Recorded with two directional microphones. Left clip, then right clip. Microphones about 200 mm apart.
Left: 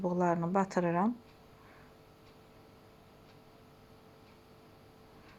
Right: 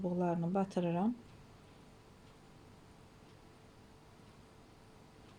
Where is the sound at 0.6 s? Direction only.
Centre (ahead or behind).